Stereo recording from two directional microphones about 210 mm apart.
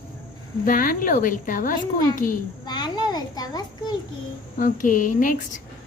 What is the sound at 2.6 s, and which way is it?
A child's voice, 20° left (ahead or behind).